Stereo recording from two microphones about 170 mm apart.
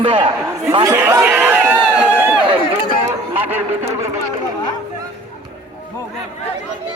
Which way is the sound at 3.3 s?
10° right (ahead or behind).